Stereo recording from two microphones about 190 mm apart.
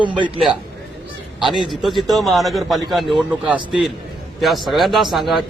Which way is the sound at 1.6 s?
Centre (ahead or behind).